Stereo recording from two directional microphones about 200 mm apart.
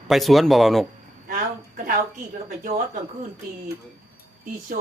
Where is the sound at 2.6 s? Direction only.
45° right (ahead or behind).